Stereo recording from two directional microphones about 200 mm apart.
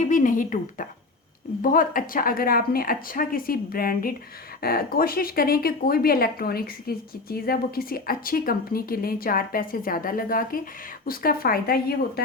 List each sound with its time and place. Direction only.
0.0 s speech: 40° left (ahead or behind)